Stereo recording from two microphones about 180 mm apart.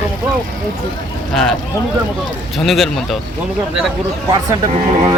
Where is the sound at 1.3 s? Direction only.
Centre (ahead or behind).